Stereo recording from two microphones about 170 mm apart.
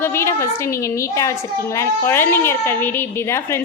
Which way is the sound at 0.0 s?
15° left (ahead or behind).